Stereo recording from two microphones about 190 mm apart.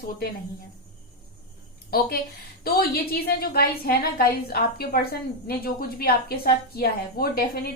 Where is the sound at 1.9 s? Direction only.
55° left (ahead or behind).